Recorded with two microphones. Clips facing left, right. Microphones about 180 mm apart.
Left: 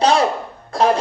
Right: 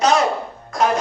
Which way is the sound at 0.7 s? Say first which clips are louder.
Left 3 dB; 30° left (ahead or behind).